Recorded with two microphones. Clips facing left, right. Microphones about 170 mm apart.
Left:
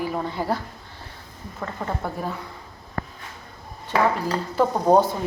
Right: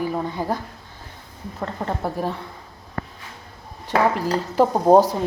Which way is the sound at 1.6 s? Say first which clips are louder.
Right 3 dB; 30° right (ahead or behind).